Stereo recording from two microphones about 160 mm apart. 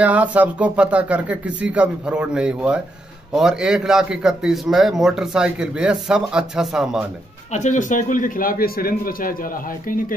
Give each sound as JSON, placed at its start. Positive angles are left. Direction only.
{"t": 0.0, "sound": "a man's voice", "side_deg": -10}
{"t": 7.5, "sound": "a man's voice", "side_deg": 50}